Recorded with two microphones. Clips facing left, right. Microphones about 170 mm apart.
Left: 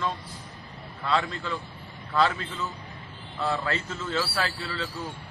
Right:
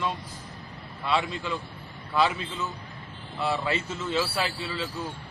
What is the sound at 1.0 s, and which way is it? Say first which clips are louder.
A man's voice: even; 15° right (ahead or behind).